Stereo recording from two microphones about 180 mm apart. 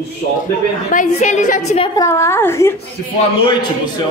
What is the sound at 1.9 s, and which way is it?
Speech, 15° left (ahead or behind).